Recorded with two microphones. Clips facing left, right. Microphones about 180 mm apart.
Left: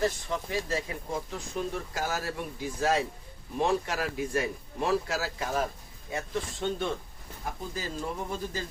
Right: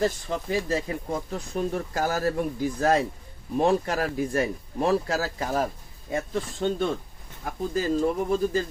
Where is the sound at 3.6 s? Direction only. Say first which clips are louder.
Right 4 dB; 40° right (ahead or behind).